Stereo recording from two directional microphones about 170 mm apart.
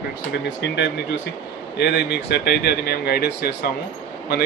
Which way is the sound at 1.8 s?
75° left (ahead or behind).